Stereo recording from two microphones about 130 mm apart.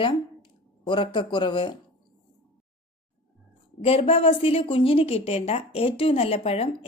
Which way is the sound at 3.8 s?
45° left (ahead or behind).